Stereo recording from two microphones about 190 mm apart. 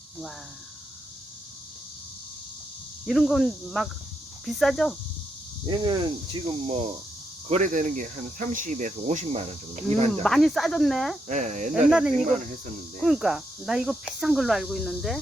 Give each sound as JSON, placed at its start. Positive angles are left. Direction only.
{"t": 3.1, "sound": "speech", "side_deg": 0}
{"t": 5.6, "sound": "speech", "side_deg": -25}
{"t": 7.5, "sound": "speech", "side_deg": -40}
{"t": 10.2, "sound": "speech", "side_deg": 0}
{"t": 11.3, "sound": "speech", "side_deg": -40}
{"t": 11.9, "sound": "speech", "side_deg": 0}